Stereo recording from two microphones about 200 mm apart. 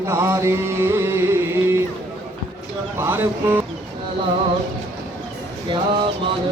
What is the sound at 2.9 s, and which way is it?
Music, 10° right (ahead or behind).